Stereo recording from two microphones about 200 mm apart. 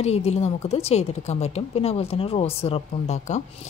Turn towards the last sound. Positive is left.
turn(degrees=35)  # may be behind; listen again after turning